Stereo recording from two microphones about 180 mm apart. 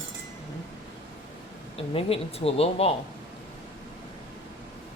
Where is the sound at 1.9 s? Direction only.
35° left (ahead or behind).